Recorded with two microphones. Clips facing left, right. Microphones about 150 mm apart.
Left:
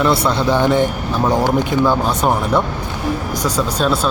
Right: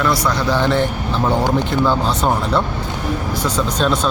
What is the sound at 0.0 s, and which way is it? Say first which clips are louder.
Speech: left 2 dB; 25° left (ahead or behind).